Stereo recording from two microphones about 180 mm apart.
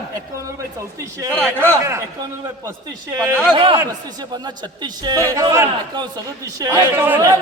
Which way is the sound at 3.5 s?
30° right (ahead or behind).